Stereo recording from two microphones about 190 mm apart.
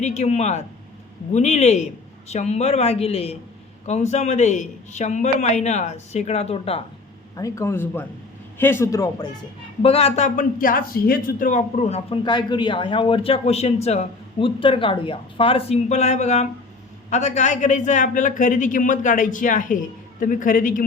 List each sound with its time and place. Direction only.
0.0 s speech: 35° left (ahead or behind)
7.3 s a man's voice: 15° left (ahead or behind)
9.8 s a man's voice: 30° left (ahead or behind)